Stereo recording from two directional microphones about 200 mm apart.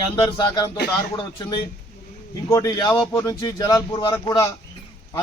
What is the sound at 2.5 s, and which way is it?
A man's voice, 20° left (ahead or behind).